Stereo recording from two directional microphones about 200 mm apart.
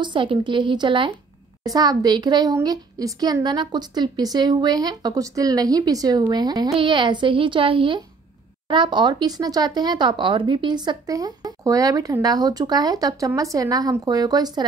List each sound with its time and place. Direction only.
0.0 s a woman's voice: 25° right (ahead or behind)